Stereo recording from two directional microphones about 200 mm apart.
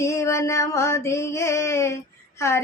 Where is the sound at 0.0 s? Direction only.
15° left (ahead or behind).